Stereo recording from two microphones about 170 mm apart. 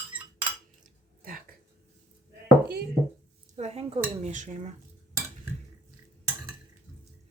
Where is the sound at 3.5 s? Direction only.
40° right (ahead or behind).